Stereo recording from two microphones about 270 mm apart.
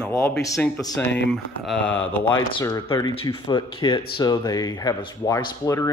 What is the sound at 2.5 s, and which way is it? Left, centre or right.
Speech, centre.